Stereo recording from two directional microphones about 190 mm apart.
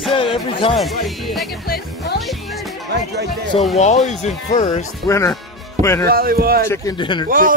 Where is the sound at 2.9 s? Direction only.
60° right (ahead or behind).